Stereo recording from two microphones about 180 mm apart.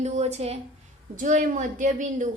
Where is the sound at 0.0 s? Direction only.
40° right (ahead or behind).